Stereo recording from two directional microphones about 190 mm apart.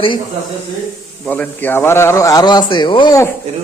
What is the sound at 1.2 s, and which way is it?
Speech, 5° left (ahead or behind).